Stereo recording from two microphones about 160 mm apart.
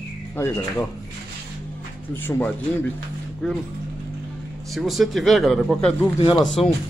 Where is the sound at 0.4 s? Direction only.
15° left (ahead or behind).